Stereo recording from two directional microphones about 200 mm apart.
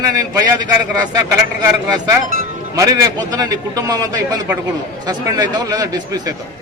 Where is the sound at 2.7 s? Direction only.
15° right (ahead or behind).